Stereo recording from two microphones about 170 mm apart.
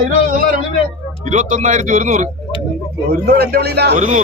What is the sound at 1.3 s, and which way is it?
A man's voice, 45° right (ahead or behind).